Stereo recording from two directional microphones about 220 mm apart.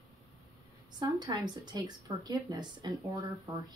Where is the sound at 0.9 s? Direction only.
20° right (ahead or behind).